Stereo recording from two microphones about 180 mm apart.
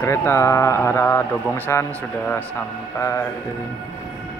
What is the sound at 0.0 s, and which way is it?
Speech, 15° left (ahead or behind).